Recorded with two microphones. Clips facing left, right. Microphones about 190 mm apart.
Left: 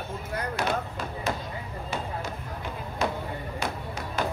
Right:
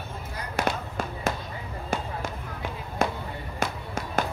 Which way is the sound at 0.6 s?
50° right (ahead or behind).